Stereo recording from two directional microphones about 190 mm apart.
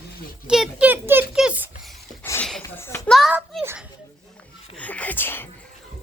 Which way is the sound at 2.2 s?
15° left (ahead or behind).